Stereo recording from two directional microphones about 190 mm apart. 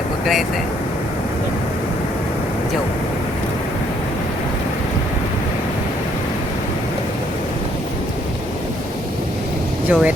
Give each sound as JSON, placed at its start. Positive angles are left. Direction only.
{"t": 9.9, "sound": "speech", "side_deg": -5}